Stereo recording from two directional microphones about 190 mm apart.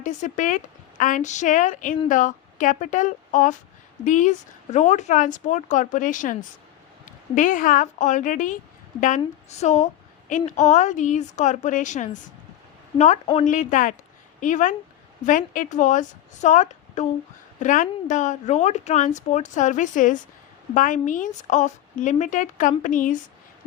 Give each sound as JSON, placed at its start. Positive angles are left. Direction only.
{"t": 0.0, "sound": "a woman's voice", "side_deg": 40}
{"t": 13.4, "sound": "a woman's voice", "side_deg": 40}